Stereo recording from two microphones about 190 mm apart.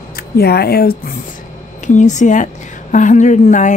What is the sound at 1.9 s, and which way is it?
A woman's voice, 40° left (ahead or behind).